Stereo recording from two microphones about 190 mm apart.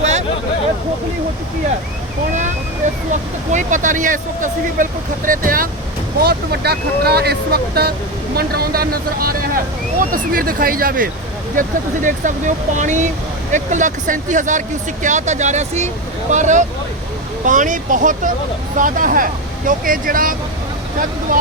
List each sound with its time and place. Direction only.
0.0 s a sound: 35° right (ahead or behind)
3.5 s speech: 40° right (ahead or behind)
6.2 s speech: 55° right (ahead or behind)